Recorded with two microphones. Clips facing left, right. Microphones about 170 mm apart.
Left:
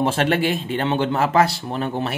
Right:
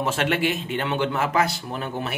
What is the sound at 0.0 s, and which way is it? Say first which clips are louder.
Speech: left 4 dB; 35° left (ahead or behind).